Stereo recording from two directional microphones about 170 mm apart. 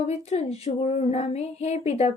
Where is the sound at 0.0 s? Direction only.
40° left (ahead or behind).